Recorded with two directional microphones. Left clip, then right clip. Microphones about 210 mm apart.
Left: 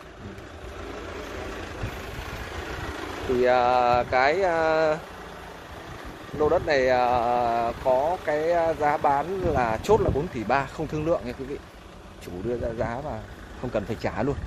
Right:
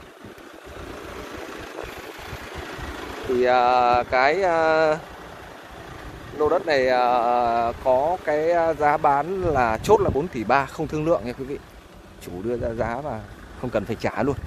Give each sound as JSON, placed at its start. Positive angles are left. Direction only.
{"t": 3.3, "sound": "speech", "side_deg": -10}
{"t": 6.4, "sound": "speech", "side_deg": -15}
{"t": 12.7, "sound": "speech", "side_deg": -25}